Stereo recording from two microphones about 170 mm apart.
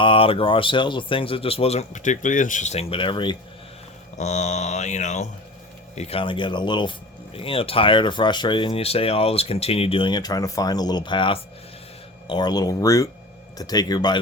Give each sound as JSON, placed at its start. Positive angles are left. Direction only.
{"t": 0.0, "sound": "speech", "side_deg": 30}
{"t": 4.2, "sound": "mantra", "side_deg": 45}
{"t": 6.0, "sound": "speech", "side_deg": 35}